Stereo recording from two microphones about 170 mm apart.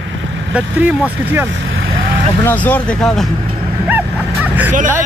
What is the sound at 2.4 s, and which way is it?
Speech, 10° left (ahead or behind).